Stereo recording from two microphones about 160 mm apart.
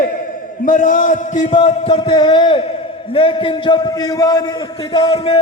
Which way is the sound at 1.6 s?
35° left (ahead or behind).